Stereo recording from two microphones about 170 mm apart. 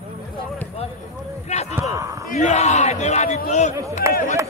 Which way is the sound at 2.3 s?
40° left (ahead or behind).